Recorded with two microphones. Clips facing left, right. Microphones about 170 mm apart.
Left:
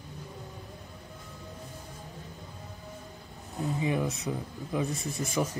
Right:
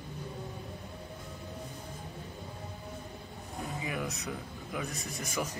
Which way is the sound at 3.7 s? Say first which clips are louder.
Left 7 dB; 30° left (ahead or behind).